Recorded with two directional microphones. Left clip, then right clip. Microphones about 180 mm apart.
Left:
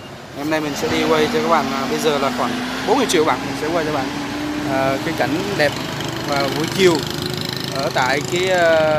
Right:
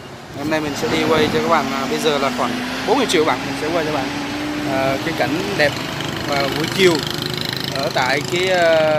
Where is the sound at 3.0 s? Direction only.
Centre (ahead or behind).